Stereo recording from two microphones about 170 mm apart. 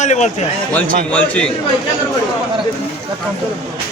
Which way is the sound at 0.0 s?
40° left (ahead or behind).